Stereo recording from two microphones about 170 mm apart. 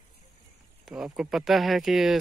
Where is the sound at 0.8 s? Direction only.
5° right (ahead or behind).